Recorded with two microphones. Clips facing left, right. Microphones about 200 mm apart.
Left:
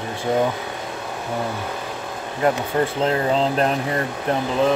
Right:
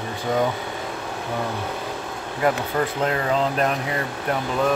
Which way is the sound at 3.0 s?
30° left (ahead or behind).